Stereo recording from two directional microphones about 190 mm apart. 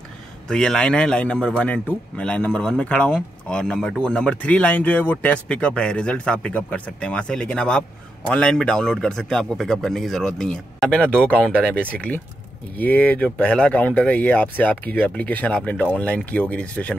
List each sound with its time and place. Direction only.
0.5 s a man's voice: 5° left (ahead or behind)